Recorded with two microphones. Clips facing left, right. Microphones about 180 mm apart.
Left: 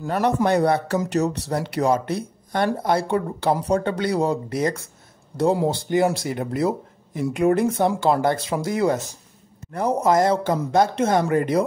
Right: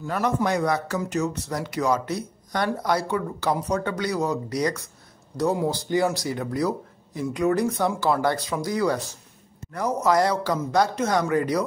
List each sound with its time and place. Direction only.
0.0 s a man's voice: 35° left (ahead or behind)
1.1 s speech: 70° left (ahead or behind)
1.8 s a man's voice: 30° left (ahead or behind)